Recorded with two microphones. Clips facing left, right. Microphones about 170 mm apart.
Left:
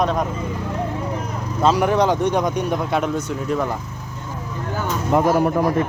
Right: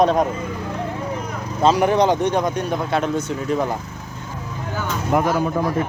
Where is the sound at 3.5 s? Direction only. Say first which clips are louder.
Right 1 dB; 15° right (ahead or behind).